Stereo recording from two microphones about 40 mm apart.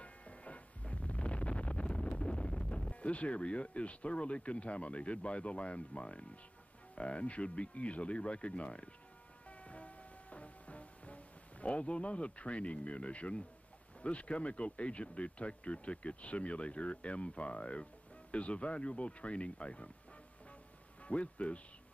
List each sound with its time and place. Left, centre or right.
0.0 s a sound: left
2.9 s speech: left
9.5 s music: left
11.6 s speech: left
21.0 s speech: left